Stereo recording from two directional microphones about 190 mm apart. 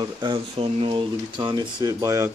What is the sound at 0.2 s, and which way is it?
Speech, 25° right (ahead or behind).